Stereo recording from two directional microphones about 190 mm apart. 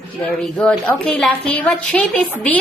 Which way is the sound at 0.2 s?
5° left (ahead or behind).